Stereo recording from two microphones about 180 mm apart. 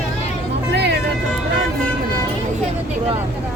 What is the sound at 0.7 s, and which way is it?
Speech, 70° right (ahead or behind).